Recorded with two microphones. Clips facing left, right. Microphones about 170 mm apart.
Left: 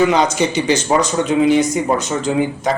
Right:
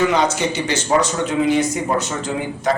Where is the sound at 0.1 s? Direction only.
15° left (ahead or behind).